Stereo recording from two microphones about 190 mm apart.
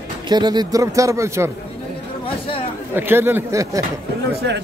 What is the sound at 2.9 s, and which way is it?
Speech, 10° right (ahead or behind).